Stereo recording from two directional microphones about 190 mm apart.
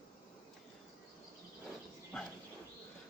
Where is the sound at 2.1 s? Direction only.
5° left (ahead or behind).